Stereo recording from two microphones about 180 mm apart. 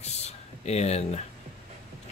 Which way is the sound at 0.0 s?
35° left (ahead or behind).